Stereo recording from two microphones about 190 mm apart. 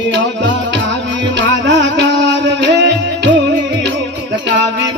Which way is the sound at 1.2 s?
65° right (ahead or behind).